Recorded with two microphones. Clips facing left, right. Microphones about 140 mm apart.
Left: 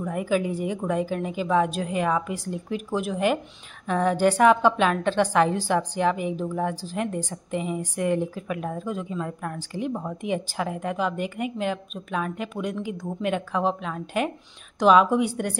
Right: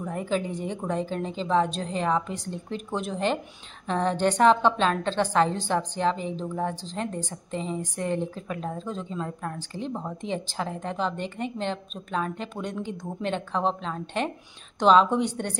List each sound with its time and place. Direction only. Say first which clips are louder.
0.1 s a woman's voice: left 3 dB; 10° left (ahead or behind)
9.2 s a woman's voice: left 1 dB; 20° right (ahead or behind)
9.6 s a woman's voice: left 3 dB; 10° left (ahead or behind)